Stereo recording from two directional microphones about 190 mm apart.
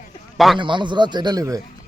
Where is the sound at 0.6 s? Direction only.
25° right (ahead or behind).